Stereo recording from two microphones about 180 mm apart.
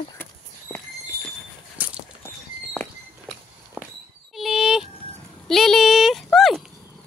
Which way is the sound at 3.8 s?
10° right (ahead or behind).